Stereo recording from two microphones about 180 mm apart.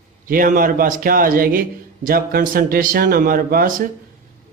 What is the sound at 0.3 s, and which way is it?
Speech, 50° right (ahead or behind).